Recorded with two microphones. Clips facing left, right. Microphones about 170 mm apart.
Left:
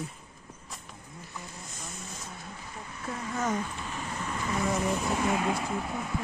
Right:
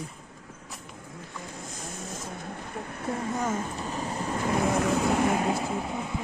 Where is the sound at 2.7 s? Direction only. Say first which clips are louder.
Right 6 dB; 55° right (ahead or behind).